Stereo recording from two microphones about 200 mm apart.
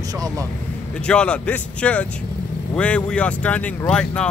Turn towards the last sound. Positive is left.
turn(degrees=5)  # may be behind; listen again after turning